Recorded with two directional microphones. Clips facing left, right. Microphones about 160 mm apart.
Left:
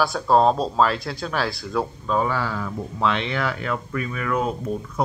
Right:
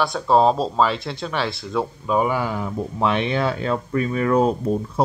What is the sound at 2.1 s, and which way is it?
Speech, 15° right (ahead or behind).